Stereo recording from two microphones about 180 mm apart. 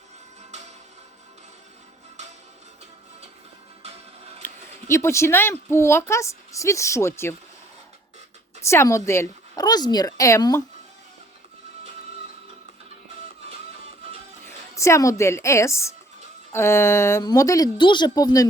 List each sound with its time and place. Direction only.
4.4 s a woman's voice: 15° left (ahead or behind)
8.6 s a woman's voice: 15° left (ahead or behind)
14.8 s a woman's voice: 15° left (ahead or behind)